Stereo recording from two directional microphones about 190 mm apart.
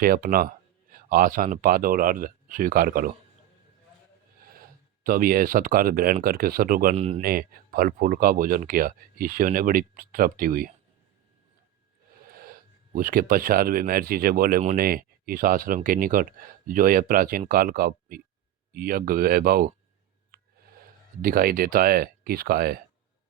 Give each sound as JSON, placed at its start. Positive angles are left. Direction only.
{"t": 0.0, "sound": "speech", "side_deg": -50}
{"t": 4.6, "sound": "speech", "side_deg": -50}
{"t": 6.9, "sound": "speech", "side_deg": -35}
{"t": 7.2, "sound": "speech", "side_deg": -50}
{"t": 12.3, "sound": "speech", "side_deg": -50}